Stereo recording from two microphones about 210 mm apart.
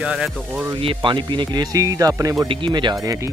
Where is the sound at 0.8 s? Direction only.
25° right (ahead or behind).